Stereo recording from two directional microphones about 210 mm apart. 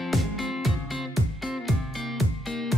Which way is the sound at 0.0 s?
Centre (ahead or behind).